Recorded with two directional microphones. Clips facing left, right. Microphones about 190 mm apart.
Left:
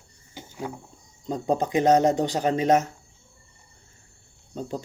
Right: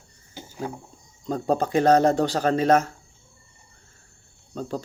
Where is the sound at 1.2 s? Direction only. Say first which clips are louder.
Right 1 dB; 20° left (ahead or behind).